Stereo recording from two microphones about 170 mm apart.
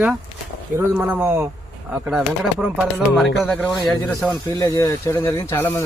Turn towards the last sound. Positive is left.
turn(degrees=15)  # may be behind; listen again after turning